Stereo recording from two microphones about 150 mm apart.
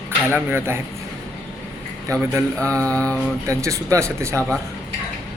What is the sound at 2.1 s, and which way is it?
Speech, 20° right (ahead or behind).